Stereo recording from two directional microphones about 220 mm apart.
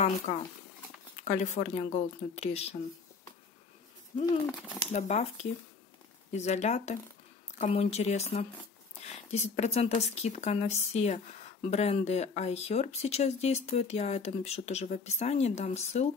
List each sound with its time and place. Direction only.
0.3 s speech: 30° left (ahead or behind)
4.2 s speech: 20° left (ahead or behind)
4.9 s speech: 30° left (ahead or behind)